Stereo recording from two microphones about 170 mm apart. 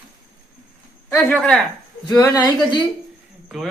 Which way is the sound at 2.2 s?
25° left (ahead or behind).